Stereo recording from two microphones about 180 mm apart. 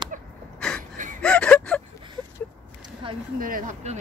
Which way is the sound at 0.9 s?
45° right (ahead or behind).